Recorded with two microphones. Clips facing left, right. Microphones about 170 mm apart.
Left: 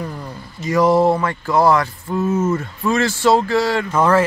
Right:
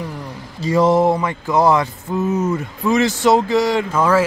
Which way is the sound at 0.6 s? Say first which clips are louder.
Even; 25° right (ahead or behind).